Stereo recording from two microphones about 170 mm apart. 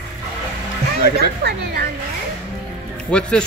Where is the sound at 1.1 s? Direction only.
70° right (ahead or behind).